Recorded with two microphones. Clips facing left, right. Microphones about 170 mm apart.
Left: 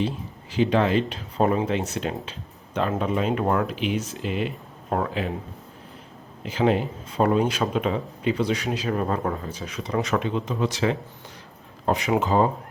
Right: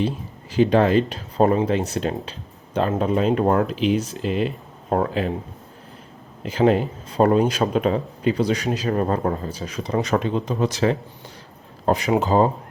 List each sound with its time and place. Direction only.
0.5 s speech: 40° right (ahead or behind)
6.4 s speech: 40° right (ahead or behind)